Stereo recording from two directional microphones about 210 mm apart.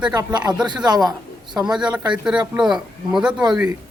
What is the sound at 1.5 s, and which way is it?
A man's voice, 5° right (ahead or behind).